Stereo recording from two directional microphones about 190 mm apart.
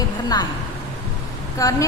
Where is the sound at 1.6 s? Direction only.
15° left (ahead or behind).